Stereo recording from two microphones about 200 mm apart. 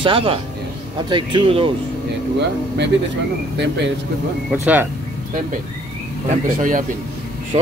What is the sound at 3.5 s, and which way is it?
Speech, 60° right (ahead or behind).